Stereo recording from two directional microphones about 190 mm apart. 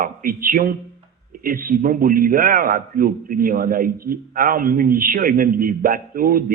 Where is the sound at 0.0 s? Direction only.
50° right (ahead or behind).